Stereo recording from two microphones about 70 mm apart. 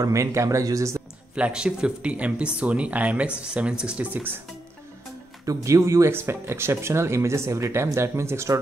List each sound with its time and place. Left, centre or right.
0.0 s speech: right
1.3 s speech: centre
5.4 s speech: right